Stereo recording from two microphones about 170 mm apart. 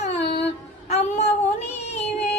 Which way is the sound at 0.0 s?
40° left (ahead or behind).